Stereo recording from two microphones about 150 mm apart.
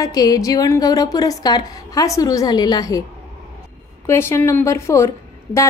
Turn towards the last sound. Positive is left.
turn(degrees=20)  # may be behind; listen again after turning